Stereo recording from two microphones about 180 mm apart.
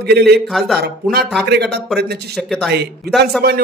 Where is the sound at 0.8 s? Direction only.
60° right (ahead or behind).